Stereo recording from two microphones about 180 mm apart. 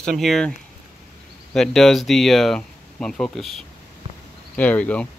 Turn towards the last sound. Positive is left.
turn(degrees=5)  # may be behind; listen again after turning